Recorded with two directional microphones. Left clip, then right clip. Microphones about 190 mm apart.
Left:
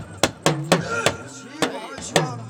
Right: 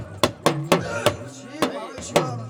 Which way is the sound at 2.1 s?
10° left (ahead or behind).